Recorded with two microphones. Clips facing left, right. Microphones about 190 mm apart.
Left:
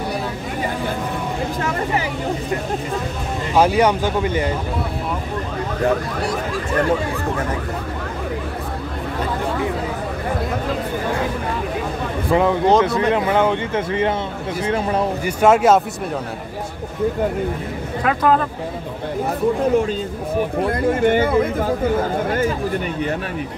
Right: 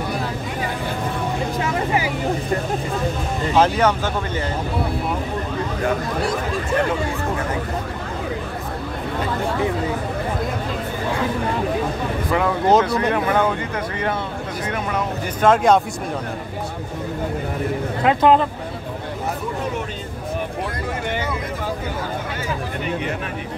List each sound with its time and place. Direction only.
3.5 s speech: 10° left (ahead or behind)
12.3 s speech: 20° left (ahead or behind)
15.2 s speech: 10° left (ahead or behind)
18.0 s speech: 25° right (ahead or behind)
20.6 s speech: 55° left (ahead or behind)